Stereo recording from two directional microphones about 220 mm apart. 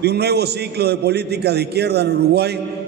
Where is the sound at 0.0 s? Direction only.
50° right (ahead or behind).